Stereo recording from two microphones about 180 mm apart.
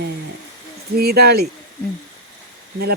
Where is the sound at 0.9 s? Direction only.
60° right (ahead or behind).